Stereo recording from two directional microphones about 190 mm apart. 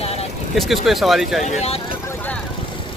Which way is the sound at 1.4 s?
35° left (ahead or behind).